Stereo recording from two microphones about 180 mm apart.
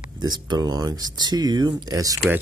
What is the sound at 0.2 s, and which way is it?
Speech, 25° right (ahead or behind).